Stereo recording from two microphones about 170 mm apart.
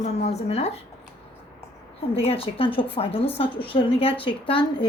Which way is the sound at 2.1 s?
35° left (ahead or behind).